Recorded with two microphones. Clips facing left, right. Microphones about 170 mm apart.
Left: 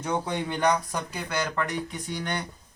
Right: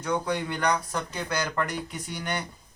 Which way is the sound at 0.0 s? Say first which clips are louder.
Right 1 dB; 25° left (ahead or behind).